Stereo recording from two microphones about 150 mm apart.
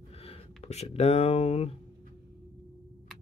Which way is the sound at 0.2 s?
45° left (ahead or behind).